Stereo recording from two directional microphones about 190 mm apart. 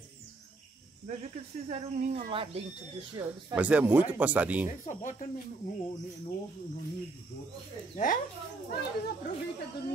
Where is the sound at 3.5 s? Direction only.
5° right (ahead or behind).